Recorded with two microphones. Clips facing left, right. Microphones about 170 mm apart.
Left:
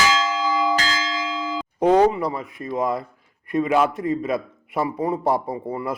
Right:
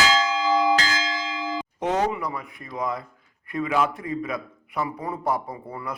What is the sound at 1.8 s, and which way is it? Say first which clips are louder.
A man's voice: left 8 dB; 30° left (ahead or behind).